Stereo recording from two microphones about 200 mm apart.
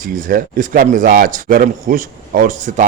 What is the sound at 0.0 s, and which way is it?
Speech, 45° right (ahead or behind).